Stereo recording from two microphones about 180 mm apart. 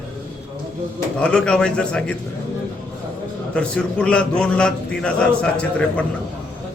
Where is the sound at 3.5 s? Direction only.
5° left (ahead or behind).